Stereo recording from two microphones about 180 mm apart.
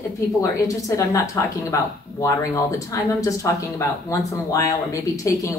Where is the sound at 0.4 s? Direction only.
20° left (ahead or behind).